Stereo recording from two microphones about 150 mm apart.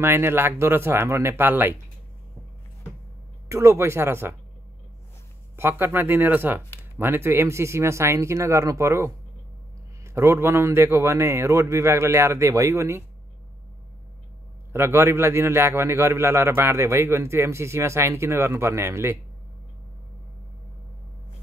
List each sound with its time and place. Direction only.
0.0 s a man's voice: 15° right (ahead or behind)
3.4 s a man's voice: 20° right (ahead or behind)
5.6 s a man's voice: 15° right (ahead or behind)
14.7 s a man's voice: 15° right (ahead or behind)